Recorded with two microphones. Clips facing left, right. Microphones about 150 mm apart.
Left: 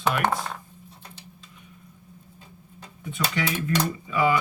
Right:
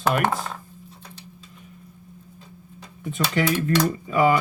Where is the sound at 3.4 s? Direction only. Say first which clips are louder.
Right 5 dB; 40° right (ahead or behind).